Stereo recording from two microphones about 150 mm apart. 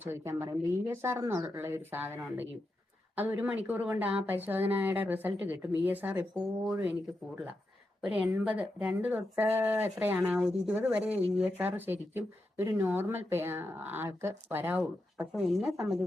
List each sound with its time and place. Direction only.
0.0 s speech: 15° right (ahead or behind)
8.0 s speech: 10° right (ahead or behind)
15.5 s speech: centre (ahead or behind)